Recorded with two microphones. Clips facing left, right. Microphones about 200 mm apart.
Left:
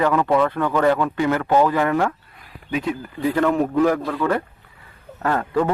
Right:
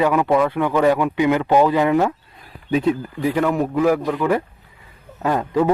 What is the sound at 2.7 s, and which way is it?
Speech, 30° right (ahead or behind).